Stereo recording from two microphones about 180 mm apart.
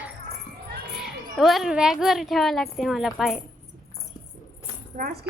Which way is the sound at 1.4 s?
Centre (ahead or behind).